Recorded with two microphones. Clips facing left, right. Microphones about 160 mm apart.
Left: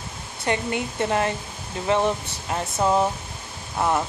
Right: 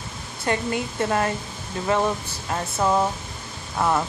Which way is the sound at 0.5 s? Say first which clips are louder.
Even; 20° left (ahead or behind).